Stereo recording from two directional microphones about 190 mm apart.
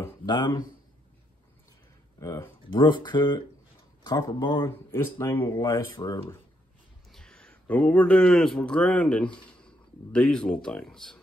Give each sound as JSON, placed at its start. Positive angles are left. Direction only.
{"t": 0.0, "sound": "a sound", "side_deg": 20}
{"t": 2.1, "sound": "speech", "side_deg": 15}
{"t": 4.6, "sound": "speech", "side_deg": 10}
{"t": 5.9, "sound": "speech", "side_deg": 25}
{"t": 7.1, "sound": "speech", "side_deg": 0}